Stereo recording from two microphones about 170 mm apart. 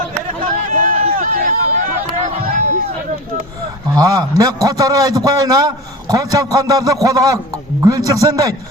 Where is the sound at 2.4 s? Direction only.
40° right (ahead or behind).